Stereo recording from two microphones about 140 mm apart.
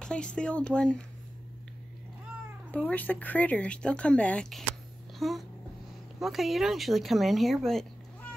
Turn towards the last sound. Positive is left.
turn(degrees=0)  # may be behind; listen again after turning